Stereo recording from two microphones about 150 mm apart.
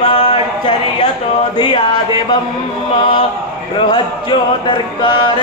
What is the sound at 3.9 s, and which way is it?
Music, 30° left (ahead or behind).